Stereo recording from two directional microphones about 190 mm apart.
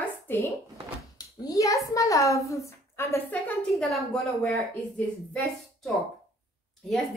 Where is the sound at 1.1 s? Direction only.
20° left (ahead or behind).